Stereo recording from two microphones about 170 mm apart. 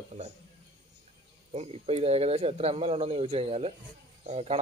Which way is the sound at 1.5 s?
35° right (ahead or behind).